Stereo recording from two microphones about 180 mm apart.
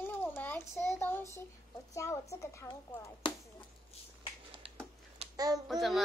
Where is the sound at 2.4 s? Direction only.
15° left (ahead or behind).